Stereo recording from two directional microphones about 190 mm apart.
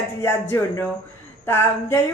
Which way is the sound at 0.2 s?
10° left (ahead or behind).